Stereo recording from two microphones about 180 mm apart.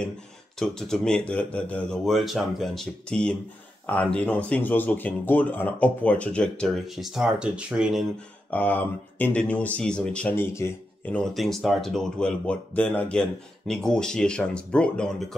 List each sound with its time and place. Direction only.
0.6 s speech: 5° left (ahead or behind)
8.5 s speech: 10° left (ahead or behind)